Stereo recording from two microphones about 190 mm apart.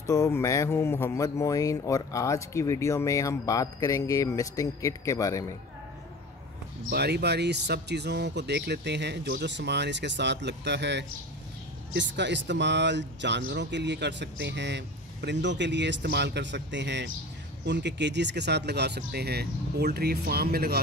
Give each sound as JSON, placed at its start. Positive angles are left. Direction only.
{"t": 0.0, "sound": "speech", "side_deg": 15}
{"t": 6.9, "sound": "speech", "side_deg": -60}